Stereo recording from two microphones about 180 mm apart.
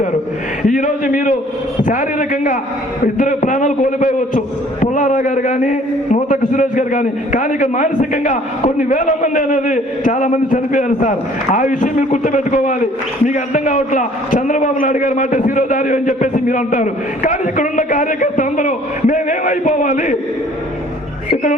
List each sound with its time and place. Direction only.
0.6 s a man's voice: 45° left (ahead or behind)